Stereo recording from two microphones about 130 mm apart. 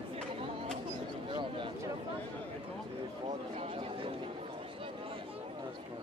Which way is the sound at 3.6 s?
50° right (ahead or behind).